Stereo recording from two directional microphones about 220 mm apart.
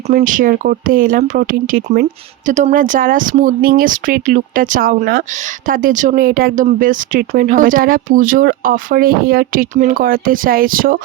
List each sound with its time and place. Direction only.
0.1 s speech: 35° right (ahead or behind)